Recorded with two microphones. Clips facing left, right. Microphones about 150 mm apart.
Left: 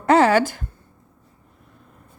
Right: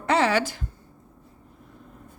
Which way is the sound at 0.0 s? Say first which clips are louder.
Left 6 dB; 45° left (ahead or behind).